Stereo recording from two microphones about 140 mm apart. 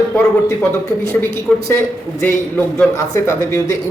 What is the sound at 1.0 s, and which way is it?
A man's voice, 15° left (ahead or behind).